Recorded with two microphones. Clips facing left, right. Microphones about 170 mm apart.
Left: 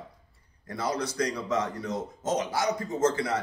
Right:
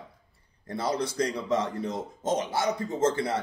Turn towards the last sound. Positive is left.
turn(degrees=-25)  # may be behind; listen again after turning